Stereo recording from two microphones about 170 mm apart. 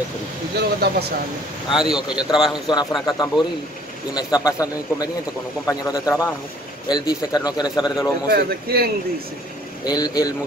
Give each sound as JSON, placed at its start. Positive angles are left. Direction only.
{"t": 0.6, "sound": "speech", "side_deg": -70}
{"t": 1.7, "sound": "speech", "side_deg": -5}
{"t": 3.1, "sound": "a man's voice", "side_deg": 25}
{"t": 8.3, "sound": "speech", "side_deg": -65}
{"t": 9.8, "sound": "a man's voice", "side_deg": 25}